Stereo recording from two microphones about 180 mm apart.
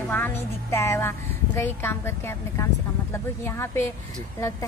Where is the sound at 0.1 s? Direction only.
15° left (ahead or behind).